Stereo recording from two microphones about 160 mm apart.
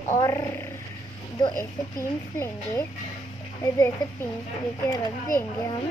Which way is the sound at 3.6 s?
20° left (ahead or behind).